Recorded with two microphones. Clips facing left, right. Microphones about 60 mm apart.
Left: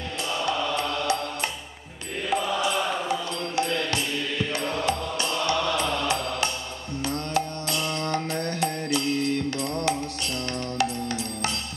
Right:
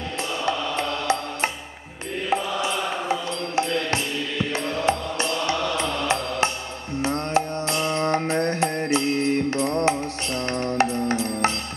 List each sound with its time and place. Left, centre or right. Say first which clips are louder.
0.5 s music: right 2 dB; right
2.2 s mantra: right 1 dB; right
4.8 s mantra: right 3 dB; right
7.0 s music: right 4 dB; right